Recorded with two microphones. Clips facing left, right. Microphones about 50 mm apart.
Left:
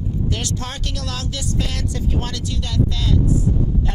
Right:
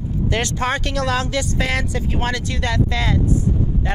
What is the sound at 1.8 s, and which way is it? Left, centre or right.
Speech, right.